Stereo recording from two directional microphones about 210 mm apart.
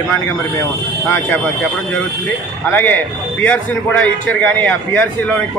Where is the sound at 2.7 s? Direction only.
10° left (ahead or behind).